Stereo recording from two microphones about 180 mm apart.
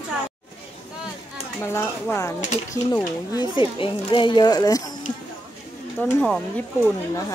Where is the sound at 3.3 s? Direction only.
25° left (ahead or behind).